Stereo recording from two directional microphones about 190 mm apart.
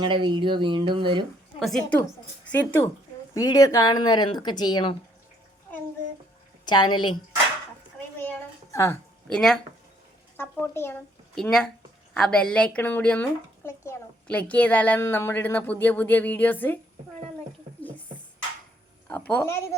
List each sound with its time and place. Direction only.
0.0 s speech: 25° right (ahead or behind)
1.5 s a woman's voice: centre (ahead or behind); by 4.9 s 25° left (ahead or behind)
6.7 s speech: 25° left (ahead or behind)
8.2 s a sound: 15° left (ahead or behind)
9.3 s a woman's voice: centre (ahead or behind)
19.0 s a woman's voice: 10° left (ahead or behind)